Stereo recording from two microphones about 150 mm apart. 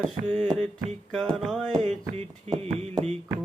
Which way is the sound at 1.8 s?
45° right (ahead or behind).